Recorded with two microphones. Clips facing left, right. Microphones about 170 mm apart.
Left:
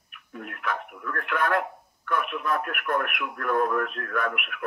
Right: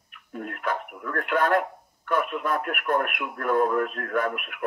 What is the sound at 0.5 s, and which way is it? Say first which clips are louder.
Speech: right 2 dB; 25° right (ahead or behind).